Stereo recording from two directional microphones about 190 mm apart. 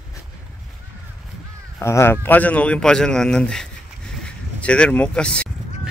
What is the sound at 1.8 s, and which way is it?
A man's voice, 15° left (ahead or behind).